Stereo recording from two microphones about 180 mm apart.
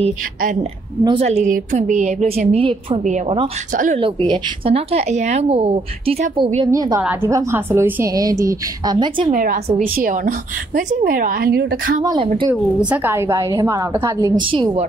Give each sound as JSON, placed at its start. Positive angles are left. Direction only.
{"t": 1.0, "sound": "a woman's voice", "side_deg": -35}
{"t": 4.0, "sound": "a woman's voice", "side_deg": -30}
{"t": 9.3, "sound": "a woman's voice", "side_deg": -45}
{"t": 12.0, "sound": "a woman's voice", "side_deg": -20}
{"t": 14.4, "sound": "a woman's voice", "side_deg": -30}